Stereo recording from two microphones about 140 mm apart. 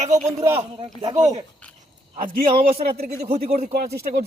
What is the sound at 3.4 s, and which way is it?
Speech, 60° right (ahead or behind).